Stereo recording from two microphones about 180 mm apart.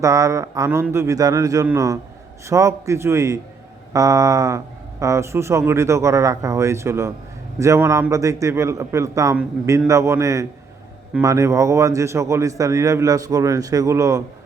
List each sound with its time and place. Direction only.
0.0 s a man's voice: 15° right (ahead or behind)